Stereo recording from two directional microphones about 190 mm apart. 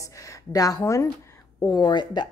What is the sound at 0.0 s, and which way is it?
A woman's voice, 15° left (ahead or behind).